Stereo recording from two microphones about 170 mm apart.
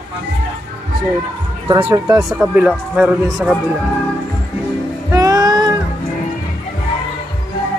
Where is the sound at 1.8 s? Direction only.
10° right (ahead or behind).